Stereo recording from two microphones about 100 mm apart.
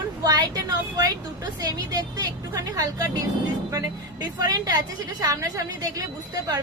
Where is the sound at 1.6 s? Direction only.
40° right (ahead or behind).